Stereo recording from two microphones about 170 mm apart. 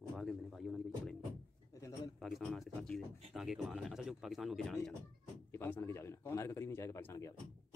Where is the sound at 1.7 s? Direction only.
20° left (ahead or behind).